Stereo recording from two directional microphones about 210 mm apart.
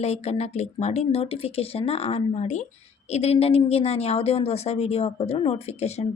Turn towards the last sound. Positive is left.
turn(degrees=30)  # may be behind; listen again after turning